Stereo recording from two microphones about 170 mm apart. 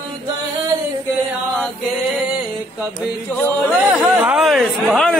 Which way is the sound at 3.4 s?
Centre (ahead or behind).